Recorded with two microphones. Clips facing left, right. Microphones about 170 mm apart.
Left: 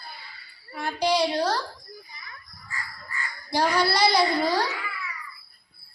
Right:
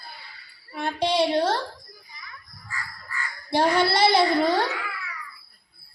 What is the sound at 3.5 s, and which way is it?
Speech, 25° right (ahead or behind).